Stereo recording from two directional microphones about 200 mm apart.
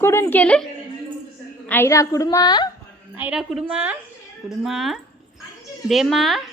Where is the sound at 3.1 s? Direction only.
5° right (ahead or behind).